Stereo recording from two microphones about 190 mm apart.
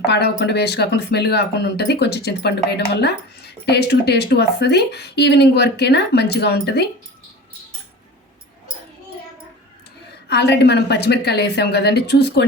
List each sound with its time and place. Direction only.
0.1 s speech: 65° left (ahead or behind)
10.2 s speech: 60° left (ahead or behind)